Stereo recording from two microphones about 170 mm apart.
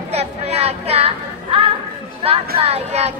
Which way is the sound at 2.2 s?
35° right (ahead or behind).